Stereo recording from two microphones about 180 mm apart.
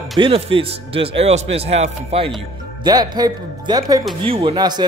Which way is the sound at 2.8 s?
20° right (ahead or behind).